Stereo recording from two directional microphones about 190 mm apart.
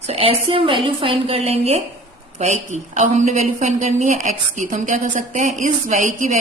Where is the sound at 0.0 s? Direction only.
30° right (ahead or behind).